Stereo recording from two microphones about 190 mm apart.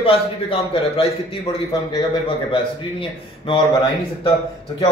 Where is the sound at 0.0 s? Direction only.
30° left (ahead or behind).